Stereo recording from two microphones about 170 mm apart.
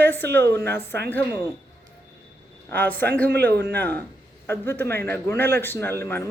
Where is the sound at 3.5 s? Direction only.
70° right (ahead or behind).